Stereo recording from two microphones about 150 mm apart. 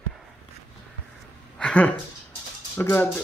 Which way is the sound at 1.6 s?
5° left (ahead or behind).